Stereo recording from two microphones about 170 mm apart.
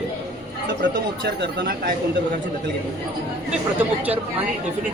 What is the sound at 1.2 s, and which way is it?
Speech, 85° right.